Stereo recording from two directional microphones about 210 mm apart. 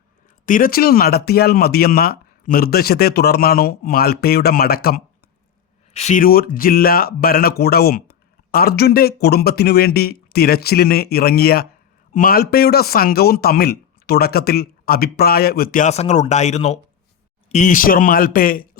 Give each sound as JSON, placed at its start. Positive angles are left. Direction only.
{"t": 0.4, "sound": "a man's voice", "side_deg": 40}
{"t": 5.9, "sound": "a man's voice", "side_deg": 30}